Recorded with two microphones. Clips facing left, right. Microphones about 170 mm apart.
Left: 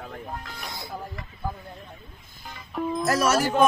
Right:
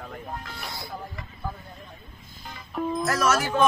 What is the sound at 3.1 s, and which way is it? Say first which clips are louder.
Speech: left 3 dB; 35° left (ahead or behind).